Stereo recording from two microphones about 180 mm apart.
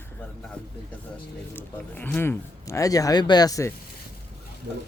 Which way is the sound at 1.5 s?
10° left (ahead or behind).